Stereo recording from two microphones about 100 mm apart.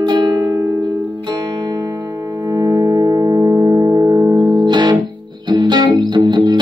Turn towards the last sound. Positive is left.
turn(degrees=-50)  # may be behind; listen again after turning